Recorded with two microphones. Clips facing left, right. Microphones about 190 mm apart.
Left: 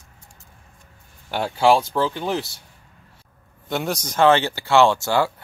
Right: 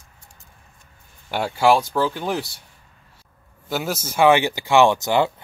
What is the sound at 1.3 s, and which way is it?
Speech, 10° right (ahead or behind).